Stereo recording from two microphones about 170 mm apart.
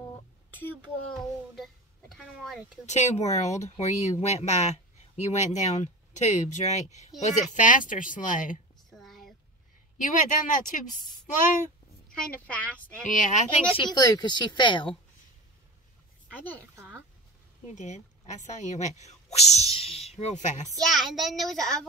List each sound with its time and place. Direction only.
1.5 s a sound: centre (ahead or behind)
2.9 s speech: 40° left (ahead or behind)
8.9 s a sound: centre (ahead or behind)
9.9 s speech: 50° left (ahead or behind)
12.1 s speech: 5° left (ahead or behind)
13.1 s speech: 50° left (ahead or behind)
13.7 s a woman's voice: 25° left (ahead or behind)
16.3 s a woman's voice: 10° left (ahead or behind)
16.7 s a sound: 10° right (ahead or behind)
17.7 s speech: 45° left (ahead or behind)
20.9 s speech: centre (ahead or behind)